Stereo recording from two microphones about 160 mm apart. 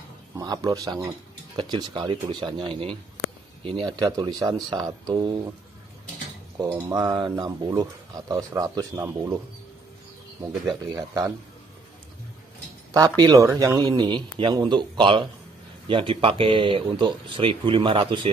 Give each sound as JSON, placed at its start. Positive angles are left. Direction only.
{"t": 0.4, "sound": "speech", "side_deg": -25}
{"t": 6.8, "sound": "speech", "side_deg": -25}
{"t": 12.9, "sound": "speech", "side_deg": -25}